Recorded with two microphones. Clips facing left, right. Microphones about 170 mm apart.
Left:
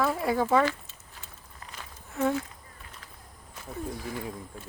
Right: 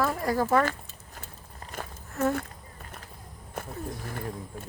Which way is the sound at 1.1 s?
45° right (ahead or behind).